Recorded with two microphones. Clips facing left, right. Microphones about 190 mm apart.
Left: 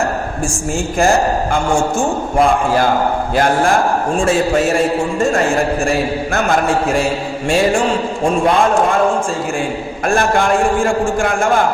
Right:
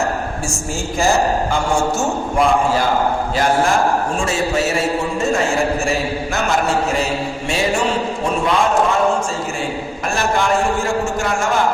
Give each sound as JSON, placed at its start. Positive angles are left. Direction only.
{"t": 3.3, "sound": "a man's voice", "side_deg": 55}
{"t": 6.3, "sound": "a man's voice", "side_deg": 55}
{"t": 10.1, "sound": "a man's voice", "side_deg": 55}